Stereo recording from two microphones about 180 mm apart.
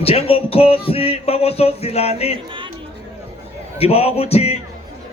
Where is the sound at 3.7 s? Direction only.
35° left (ahead or behind).